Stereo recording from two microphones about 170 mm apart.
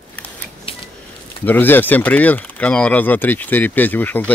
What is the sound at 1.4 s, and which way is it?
Speech, 10° left (ahead or behind).